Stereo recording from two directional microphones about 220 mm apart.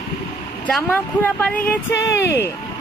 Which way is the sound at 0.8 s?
10° left (ahead or behind).